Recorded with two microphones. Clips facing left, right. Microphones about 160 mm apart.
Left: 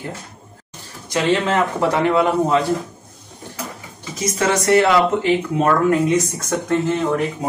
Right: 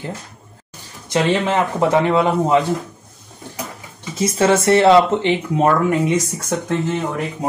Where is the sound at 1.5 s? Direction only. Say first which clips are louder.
Right 2 dB; 20° right (ahead or behind).